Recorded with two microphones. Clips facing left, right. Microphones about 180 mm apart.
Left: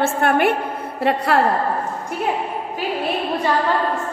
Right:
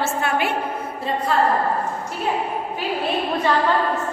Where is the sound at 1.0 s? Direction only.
75° left (ahead or behind).